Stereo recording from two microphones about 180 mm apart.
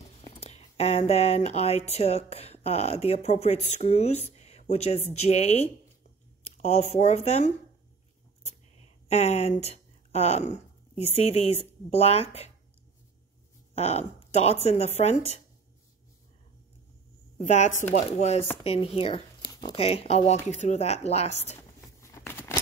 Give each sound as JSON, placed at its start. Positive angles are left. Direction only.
{"t": 0.2, "sound": "speech", "side_deg": 35}
{"t": 9.1, "sound": "a woman's voice", "side_deg": 35}
{"t": 13.7, "sound": "speech", "side_deg": 35}
{"t": 17.4, "sound": "speech", "side_deg": 40}
{"t": 21.5, "sound": "a sound", "side_deg": 15}